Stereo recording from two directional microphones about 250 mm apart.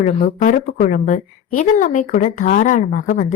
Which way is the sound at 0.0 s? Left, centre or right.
Left.